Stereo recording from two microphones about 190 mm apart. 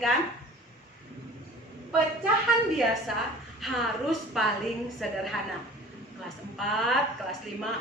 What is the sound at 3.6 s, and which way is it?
A woman's voice, centre (ahead or behind).